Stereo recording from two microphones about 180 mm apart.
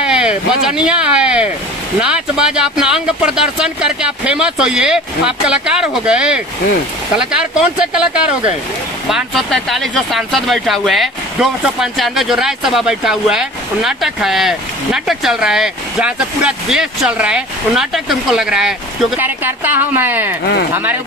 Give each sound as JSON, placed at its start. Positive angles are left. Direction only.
{"t": 0.0, "sound": "speech", "side_deg": -5}
{"t": 9.1, "sound": "speech", "side_deg": 0}